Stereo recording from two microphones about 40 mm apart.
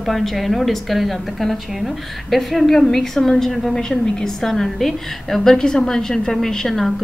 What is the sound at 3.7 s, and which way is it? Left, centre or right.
A woman's voice, centre.